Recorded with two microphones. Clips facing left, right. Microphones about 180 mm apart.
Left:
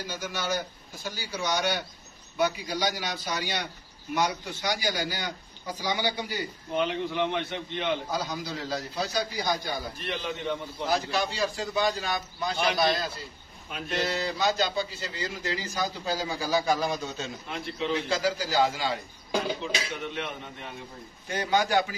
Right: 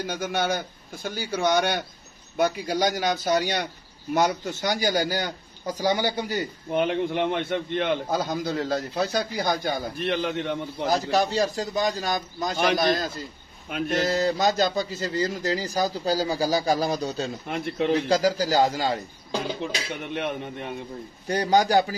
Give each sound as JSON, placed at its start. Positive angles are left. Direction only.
{"t": 0.0, "sound": "a man's voice", "side_deg": -55}
{"t": 10.9, "sound": "speech", "side_deg": -40}
{"t": 17.5, "sound": "a man's voice", "side_deg": -55}
{"t": 17.9, "sound": "speech", "side_deg": -40}
{"t": 19.6, "sound": "a man's voice", "side_deg": -55}
{"t": 21.3, "sound": "speech", "side_deg": -40}